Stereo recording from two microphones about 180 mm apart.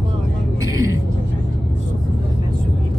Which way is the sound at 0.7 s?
15° right (ahead or behind).